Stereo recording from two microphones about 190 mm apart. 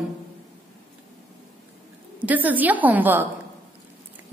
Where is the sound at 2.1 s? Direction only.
10° right (ahead or behind).